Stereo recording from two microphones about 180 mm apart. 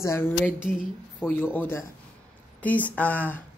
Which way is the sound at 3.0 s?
10° left (ahead or behind).